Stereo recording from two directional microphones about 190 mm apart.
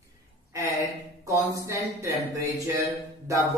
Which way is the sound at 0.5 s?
15° right (ahead or behind).